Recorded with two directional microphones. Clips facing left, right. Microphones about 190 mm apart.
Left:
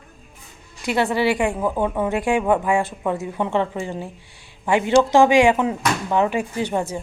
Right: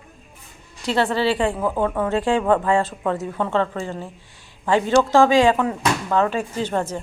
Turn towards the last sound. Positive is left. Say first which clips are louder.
# even
turn(degrees=10)  # may be behind; listen again after turning